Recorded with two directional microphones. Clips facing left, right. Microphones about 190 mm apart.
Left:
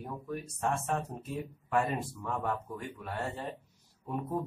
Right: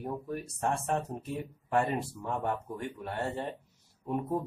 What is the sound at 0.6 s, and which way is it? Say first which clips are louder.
Speech: right 1 dB; 35° right (ahead or behind).